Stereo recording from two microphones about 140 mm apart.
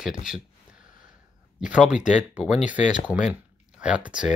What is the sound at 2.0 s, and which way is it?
Speech, 60° left (ahead or behind).